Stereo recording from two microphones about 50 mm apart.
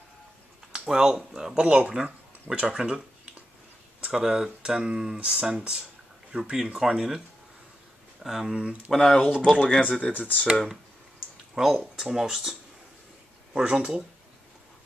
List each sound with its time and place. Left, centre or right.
0.7 s speech: centre
4.1 s speech: centre
8.5 s speech: right
8.9 s speech: centre
9.8 s speech: left
10.1 s speech: left
11.5 s speech: centre